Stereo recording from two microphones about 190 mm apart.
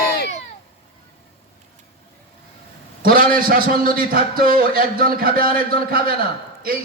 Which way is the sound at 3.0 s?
50° right (ahead or behind).